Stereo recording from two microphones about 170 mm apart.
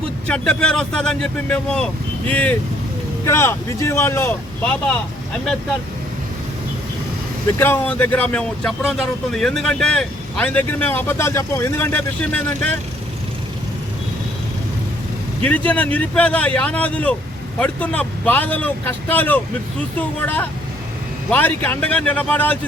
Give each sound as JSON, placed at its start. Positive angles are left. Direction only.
{"t": 0.3, "sound": "speech", "side_deg": 5}
{"t": 7.6, "sound": "speech", "side_deg": 10}
{"t": 15.4, "sound": "speech", "side_deg": 10}